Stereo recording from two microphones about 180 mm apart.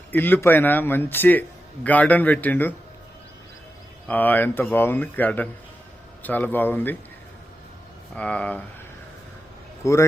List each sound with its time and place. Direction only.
0.1 s a man's voice: 10° left (ahead or behind)
4.1 s a man's voice: 10° left (ahead or behind)
8.1 s a man's voice: 5° left (ahead or behind)
9.8 s a man's voice: 15° left (ahead or behind)